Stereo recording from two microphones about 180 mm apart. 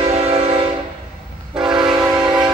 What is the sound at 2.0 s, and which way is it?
Train, 15° right (ahead or behind).